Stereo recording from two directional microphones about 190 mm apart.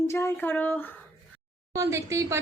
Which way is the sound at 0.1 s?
15° left (ahead or behind).